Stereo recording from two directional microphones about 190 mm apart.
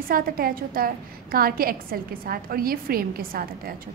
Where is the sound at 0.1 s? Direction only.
50° right (ahead or behind).